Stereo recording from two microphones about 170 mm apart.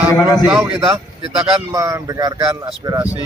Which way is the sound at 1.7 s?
20° right (ahead or behind).